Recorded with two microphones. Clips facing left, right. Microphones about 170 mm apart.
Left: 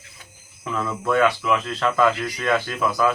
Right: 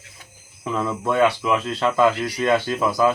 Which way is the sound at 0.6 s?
20° right (ahead or behind).